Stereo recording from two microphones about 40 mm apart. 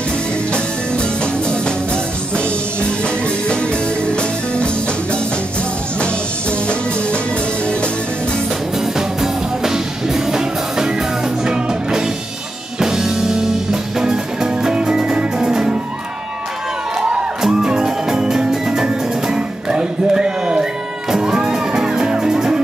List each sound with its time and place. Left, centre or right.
0.5 s music: left
4.1 s music: left
8.9 s music: centre
17.4 s music: centre